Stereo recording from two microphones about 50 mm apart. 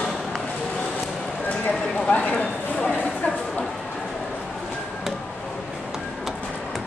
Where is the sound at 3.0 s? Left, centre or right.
Centre.